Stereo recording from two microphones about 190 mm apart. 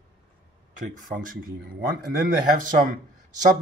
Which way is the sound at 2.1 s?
45° right (ahead or behind).